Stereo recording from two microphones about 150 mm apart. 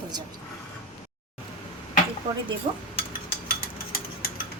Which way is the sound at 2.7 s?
45° right (ahead or behind).